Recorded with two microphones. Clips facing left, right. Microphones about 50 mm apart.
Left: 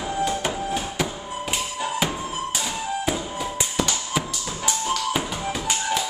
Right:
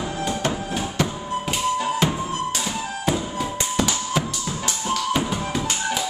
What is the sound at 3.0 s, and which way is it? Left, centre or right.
Tap, centre.